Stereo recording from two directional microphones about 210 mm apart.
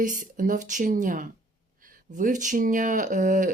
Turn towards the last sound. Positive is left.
turn(degrees=-40)  # may be behind; listen again after turning